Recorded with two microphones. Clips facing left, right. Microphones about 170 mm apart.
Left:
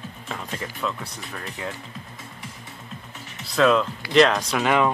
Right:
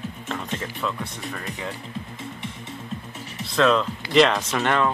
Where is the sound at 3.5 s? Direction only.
Centre (ahead or behind).